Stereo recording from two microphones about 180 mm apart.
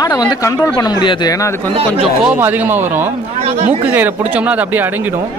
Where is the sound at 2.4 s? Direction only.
10° right (ahead or behind).